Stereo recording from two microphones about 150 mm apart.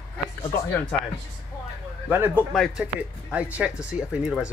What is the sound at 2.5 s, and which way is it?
Speech, centre (ahead or behind).